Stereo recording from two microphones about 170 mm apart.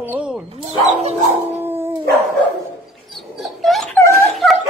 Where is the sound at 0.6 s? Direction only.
40° right (ahead or behind).